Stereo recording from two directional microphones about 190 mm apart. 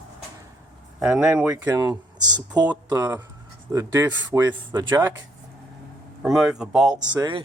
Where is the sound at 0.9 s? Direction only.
Centre (ahead or behind).